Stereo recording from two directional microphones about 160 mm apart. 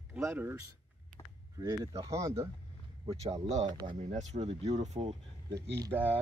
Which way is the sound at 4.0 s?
45° right (ahead or behind).